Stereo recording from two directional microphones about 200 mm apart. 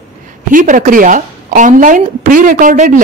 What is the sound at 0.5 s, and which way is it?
Speech, 40° right (ahead or behind).